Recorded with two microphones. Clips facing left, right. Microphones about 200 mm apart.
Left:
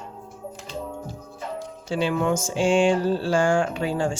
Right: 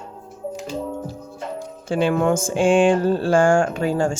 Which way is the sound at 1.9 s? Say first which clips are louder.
Right 4 dB; 50° right (ahead or behind).